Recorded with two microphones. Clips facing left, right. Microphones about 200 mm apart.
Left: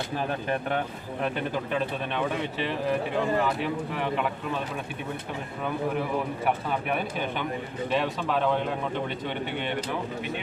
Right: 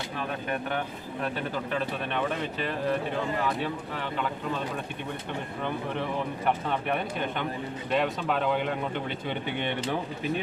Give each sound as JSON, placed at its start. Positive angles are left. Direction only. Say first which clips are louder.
{"t": 0.2, "sound": "speech", "louder": "left 2 dB", "side_deg": 30}
{"t": 6.0, "sound": "speech", "louder": "left 2 dB", "side_deg": 5}